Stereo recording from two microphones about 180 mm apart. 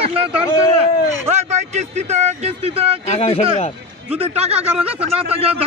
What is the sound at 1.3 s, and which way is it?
Speech, 40° right (ahead or behind).